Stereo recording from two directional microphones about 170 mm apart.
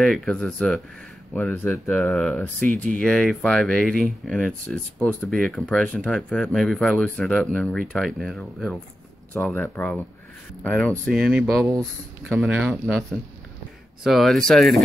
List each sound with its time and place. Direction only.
0.0 s speech: centre (ahead or behind)
11.6 s speech: 20° right (ahead or behind)
12.4 s speech: centre (ahead or behind)